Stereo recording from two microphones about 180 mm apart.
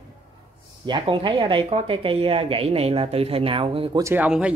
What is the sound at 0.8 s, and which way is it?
Speech, 25° right (ahead or behind).